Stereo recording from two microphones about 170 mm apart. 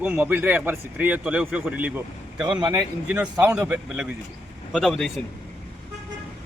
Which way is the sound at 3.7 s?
5° right (ahead or behind).